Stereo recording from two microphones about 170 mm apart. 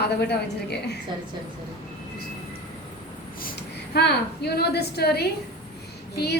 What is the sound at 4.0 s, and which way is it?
A woman's voice, 75° left (ahead or behind).